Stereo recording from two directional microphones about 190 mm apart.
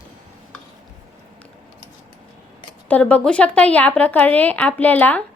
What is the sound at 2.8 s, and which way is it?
Speech, 10° left (ahead or behind).